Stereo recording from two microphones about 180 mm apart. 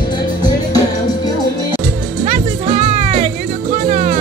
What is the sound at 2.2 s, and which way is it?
Music, 40° right (ahead or behind).